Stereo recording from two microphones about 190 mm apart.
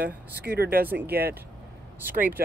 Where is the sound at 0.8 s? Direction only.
10° right (ahead or behind).